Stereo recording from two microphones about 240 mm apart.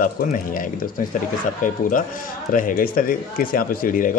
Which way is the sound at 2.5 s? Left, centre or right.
Left.